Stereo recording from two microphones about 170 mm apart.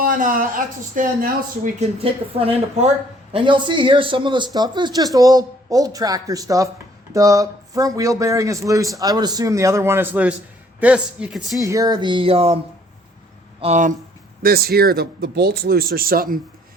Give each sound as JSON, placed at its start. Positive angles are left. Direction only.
{"t": 0.0, "sound": "speech", "side_deg": -55}
{"t": 2.4, "sound": "speech", "side_deg": -35}
{"t": 11.6, "sound": "speech", "side_deg": -20}
{"t": 13.6, "sound": "speech", "side_deg": -45}
{"t": 14.4, "sound": "speech", "side_deg": -65}